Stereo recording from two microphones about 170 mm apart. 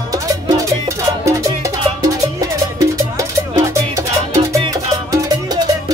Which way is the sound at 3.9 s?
20° right (ahead or behind).